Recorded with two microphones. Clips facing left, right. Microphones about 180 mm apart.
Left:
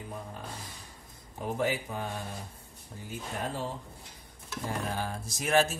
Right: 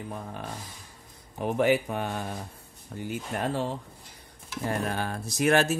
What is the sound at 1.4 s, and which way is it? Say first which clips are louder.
Speech: right 7 dB; 70° right (ahead or behind).